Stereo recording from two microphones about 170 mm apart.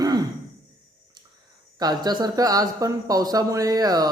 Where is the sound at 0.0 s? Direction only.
25° right (ahead or behind).